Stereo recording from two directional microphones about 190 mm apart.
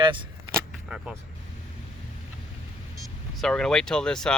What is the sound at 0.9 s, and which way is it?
Speech, 5° right (ahead or behind).